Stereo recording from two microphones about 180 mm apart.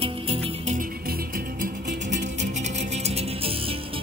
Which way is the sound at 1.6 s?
70° right (ahead or behind).